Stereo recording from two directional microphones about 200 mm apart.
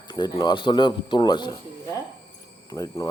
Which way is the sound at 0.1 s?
20° left (ahead or behind).